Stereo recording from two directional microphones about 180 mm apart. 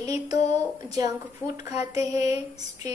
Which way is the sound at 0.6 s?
20° right (ahead or behind).